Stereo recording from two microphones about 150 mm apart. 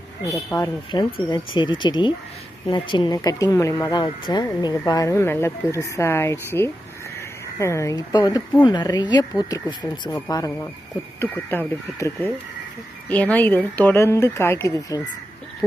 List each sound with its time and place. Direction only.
0.5 s speech: 25° left (ahead or behind)